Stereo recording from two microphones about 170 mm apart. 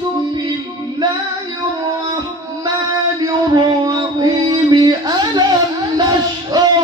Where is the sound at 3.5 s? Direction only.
25° right (ahead or behind).